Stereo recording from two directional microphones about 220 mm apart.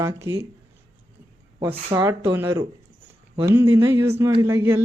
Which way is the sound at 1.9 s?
20° right (ahead or behind).